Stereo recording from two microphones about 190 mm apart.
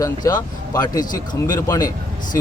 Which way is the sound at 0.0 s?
20° left (ahead or behind).